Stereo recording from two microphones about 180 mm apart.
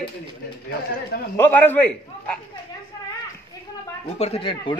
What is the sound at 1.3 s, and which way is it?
Speech, 10° left (ahead or behind).